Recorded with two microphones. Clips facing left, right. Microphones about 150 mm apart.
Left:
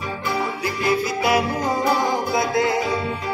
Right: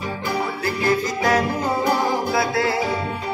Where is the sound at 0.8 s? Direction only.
10° left (ahead or behind).